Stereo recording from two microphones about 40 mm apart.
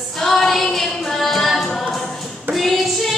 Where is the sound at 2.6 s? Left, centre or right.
Centre.